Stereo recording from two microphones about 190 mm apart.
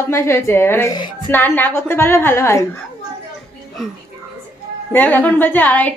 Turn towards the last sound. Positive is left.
turn(degrees=10)  # may be behind; listen again after turning